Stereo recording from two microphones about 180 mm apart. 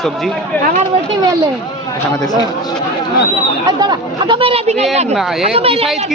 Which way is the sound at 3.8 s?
25° right (ahead or behind).